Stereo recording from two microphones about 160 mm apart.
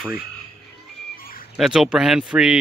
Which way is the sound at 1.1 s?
65° left (ahead or behind).